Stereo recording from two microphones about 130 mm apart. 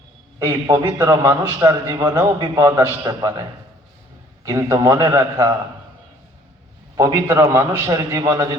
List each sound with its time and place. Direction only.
0.3 s a man's voice: 25° right (ahead or behind)
4.4 s a man's voice: 25° right (ahead or behind)
6.9 s a man's voice: 25° right (ahead or behind)